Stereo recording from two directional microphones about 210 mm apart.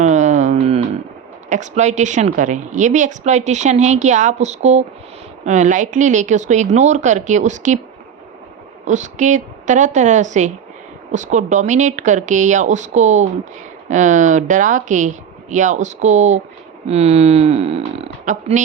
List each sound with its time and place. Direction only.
0.0 s a sound: 35° right (ahead or behind)
1.5 s speech: 35° right (ahead or behind)
8.8 s speech: 35° right (ahead or behind)